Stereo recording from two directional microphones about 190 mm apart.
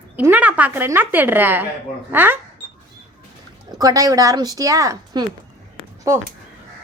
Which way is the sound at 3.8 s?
20° right (ahead or behind).